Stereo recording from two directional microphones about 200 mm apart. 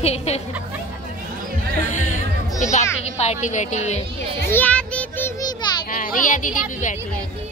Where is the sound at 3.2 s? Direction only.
35° left (ahead or behind).